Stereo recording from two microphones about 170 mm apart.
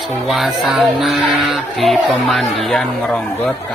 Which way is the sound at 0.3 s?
Centre (ahead or behind).